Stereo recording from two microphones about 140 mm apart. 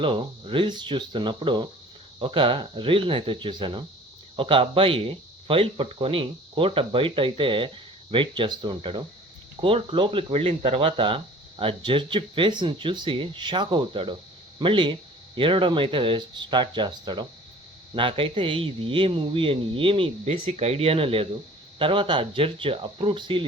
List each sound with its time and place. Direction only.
0.0 s speech: 40° right (ahead or behind)